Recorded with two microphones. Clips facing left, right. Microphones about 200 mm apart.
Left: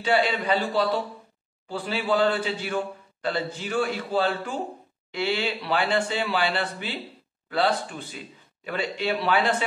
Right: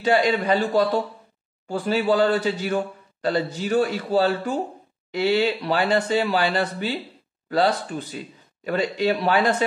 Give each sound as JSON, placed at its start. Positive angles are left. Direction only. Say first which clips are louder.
{"t": 0.0, "sound": "a man's voice", "louder": "right 4 dB", "side_deg": -40}